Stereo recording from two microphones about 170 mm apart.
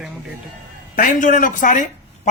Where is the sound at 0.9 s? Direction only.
50° left (ahead or behind).